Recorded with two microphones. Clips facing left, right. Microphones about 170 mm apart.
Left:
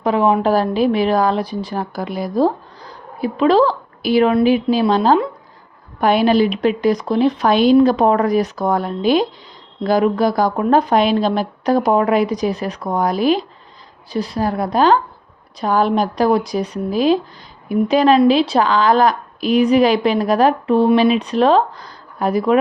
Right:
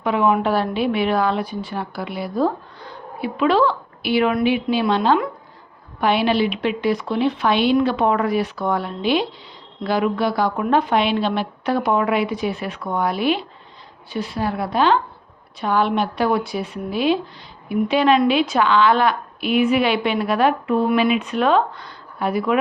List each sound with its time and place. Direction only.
0.0 s a woman's voice: 35° left (ahead or behind)